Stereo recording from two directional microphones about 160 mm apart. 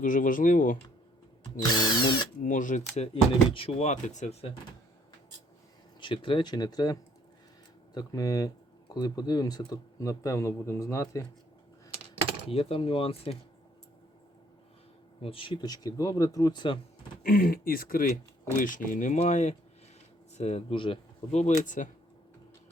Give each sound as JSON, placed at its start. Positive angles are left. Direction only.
{"t": 0.0, "sound": "speech", "side_deg": 55}
{"t": 1.5, "sound": "speech", "side_deg": 25}
{"t": 2.4, "sound": "speech", "side_deg": 55}
{"t": 3.5, "sound": "speech", "side_deg": 40}
{"t": 6.0, "sound": "speech", "side_deg": 30}
{"t": 12.5, "sound": "speech", "side_deg": 35}
{"t": 15.2, "sound": "speech", "side_deg": 35}
{"t": 17.2, "sound": "speech", "side_deg": 65}